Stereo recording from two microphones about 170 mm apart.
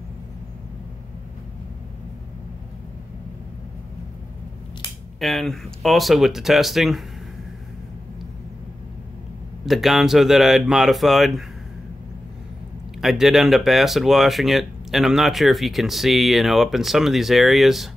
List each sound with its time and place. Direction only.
5.2 s speech: centre (ahead or behind)
9.7 s speech: centre (ahead or behind)
13.0 s speech: centre (ahead or behind)